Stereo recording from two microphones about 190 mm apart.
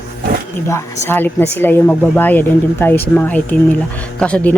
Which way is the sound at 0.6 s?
15° left (ahead or behind).